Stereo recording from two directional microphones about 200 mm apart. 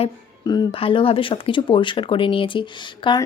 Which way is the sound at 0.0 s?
20° left (ahead or behind).